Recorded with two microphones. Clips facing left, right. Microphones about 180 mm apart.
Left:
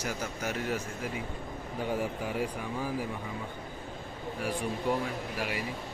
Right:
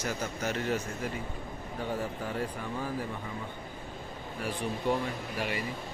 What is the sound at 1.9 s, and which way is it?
A man's voice, 10° left (ahead or behind).